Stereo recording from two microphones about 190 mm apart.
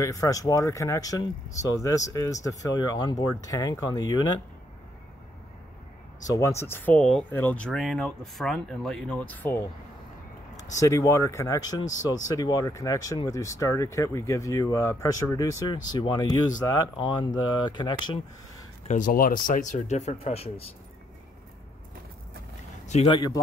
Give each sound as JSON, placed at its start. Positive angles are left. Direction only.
{"t": 0.0, "sound": "speech", "side_deg": 15}
{"t": 6.2, "sound": "speech", "side_deg": 15}
{"t": 18.9, "sound": "speech", "side_deg": 45}
{"t": 22.8, "sound": "speech", "side_deg": 30}